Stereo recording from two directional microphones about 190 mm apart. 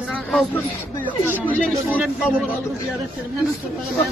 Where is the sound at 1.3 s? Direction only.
10° right (ahead or behind).